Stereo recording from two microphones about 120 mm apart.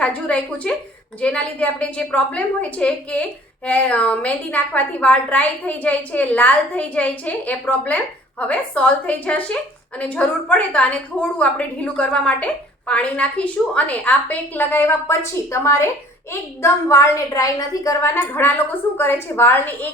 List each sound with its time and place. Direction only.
0.0 s a woman's voice: 10° left (ahead or behind)